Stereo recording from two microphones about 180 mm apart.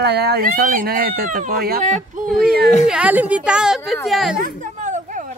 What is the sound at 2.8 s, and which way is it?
Speech, 5° right (ahead or behind).